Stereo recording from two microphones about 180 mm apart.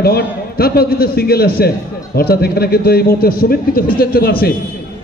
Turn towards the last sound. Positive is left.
turn(degrees=55)  # may be behind; listen again after turning